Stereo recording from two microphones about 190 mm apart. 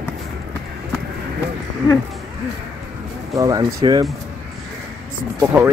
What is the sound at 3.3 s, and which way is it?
Speech, 15° right (ahead or behind).